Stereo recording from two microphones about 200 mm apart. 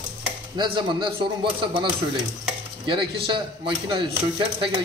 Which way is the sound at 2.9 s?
25° right (ahead or behind).